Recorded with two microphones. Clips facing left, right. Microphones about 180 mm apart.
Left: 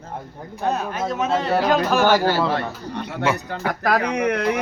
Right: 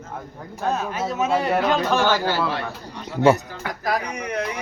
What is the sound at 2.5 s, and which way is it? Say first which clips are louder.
Speech: left 4 dB; 60° left (ahead or behind).